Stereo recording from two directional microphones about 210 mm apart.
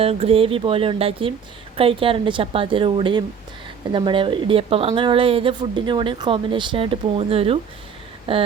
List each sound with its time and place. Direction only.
0.0 s speech: 30° right (ahead or behind)